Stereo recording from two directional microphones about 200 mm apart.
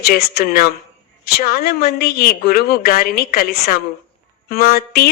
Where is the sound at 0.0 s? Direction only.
50° left (ahead or behind).